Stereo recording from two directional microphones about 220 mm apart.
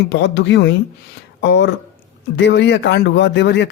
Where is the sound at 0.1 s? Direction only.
55° left (ahead or behind).